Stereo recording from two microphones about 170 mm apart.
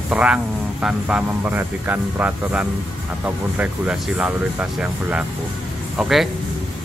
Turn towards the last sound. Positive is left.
turn(degrees=0)  # may be behind; listen again after turning